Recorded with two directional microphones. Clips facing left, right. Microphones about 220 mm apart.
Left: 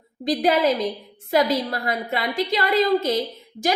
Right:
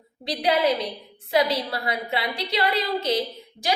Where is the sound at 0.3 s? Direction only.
45° left (ahead or behind).